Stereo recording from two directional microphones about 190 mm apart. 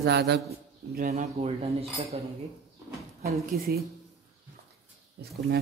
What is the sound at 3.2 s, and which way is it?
Speech, 55° right (ahead or behind).